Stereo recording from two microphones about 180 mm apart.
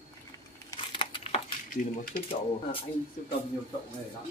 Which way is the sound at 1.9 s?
55° left (ahead or behind).